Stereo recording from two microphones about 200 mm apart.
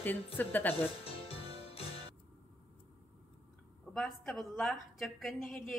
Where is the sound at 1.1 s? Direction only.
30° left (ahead or behind).